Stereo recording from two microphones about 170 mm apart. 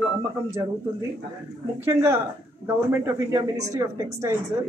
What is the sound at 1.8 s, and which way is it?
A woman's voice, 15° right (ahead or behind).